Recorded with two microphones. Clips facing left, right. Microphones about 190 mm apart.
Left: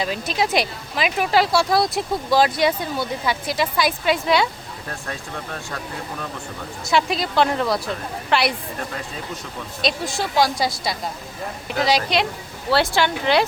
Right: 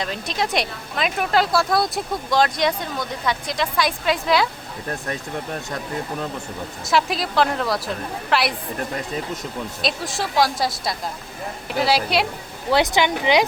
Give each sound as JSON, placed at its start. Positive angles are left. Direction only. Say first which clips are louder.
{"t": 0.0, "sound": "speech", "louder": "left 2 dB", "side_deg": 5}
{"t": 6.8, "sound": "speech", "louder": "left 1 dB", "side_deg": 0}
{"t": 9.8, "sound": "speech", "louder": "left 3 dB", "side_deg": 0}
{"t": 12.7, "sound": "speech", "louder": "right 1 dB", "side_deg": -15}